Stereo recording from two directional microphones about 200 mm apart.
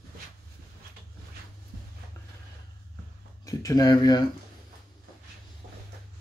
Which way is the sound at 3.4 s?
20° left (ahead or behind).